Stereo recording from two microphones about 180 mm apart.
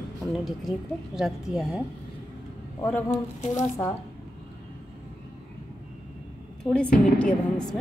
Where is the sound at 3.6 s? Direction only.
15° left (ahead or behind).